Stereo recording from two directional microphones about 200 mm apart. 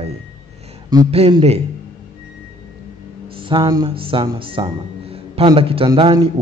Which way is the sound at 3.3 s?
25° right (ahead or behind).